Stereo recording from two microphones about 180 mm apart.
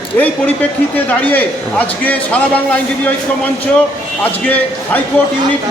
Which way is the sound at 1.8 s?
10° left (ahead or behind).